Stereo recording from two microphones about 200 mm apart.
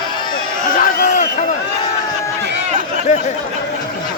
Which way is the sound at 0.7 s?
40° left (ahead or behind).